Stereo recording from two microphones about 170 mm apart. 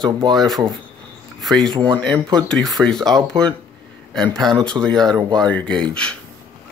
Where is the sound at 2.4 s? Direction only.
5° left (ahead or behind).